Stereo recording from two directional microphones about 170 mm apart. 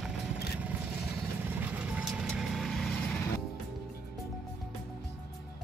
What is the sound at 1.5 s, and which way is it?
Vehicle, 10° right (ahead or behind).